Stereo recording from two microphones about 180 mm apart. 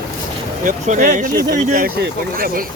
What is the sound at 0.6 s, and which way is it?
Speech, 45° right (ahead or behind).